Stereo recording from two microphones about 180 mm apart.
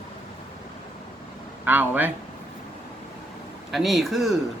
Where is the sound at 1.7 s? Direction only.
10° right (ahead or behind).